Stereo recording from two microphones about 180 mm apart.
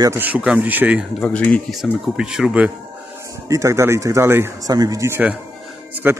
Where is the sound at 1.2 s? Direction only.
10° left (ahead or behind).